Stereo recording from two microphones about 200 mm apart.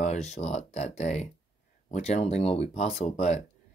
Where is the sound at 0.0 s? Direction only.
35° left (ahead or behind).